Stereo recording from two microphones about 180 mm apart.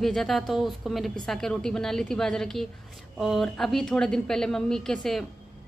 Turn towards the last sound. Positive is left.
turn(degrees=0)  # may be behind; listen again after turning